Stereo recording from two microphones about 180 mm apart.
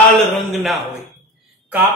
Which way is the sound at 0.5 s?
Centre (ahead or behind).